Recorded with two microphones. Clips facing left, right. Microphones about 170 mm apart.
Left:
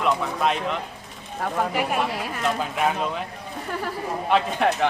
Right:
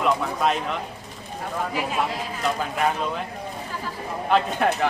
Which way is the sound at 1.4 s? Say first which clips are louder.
Left 3 dB; 65° left (ahead or behind).